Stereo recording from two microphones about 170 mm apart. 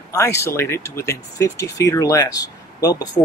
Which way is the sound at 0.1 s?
15° left (ahead or behind).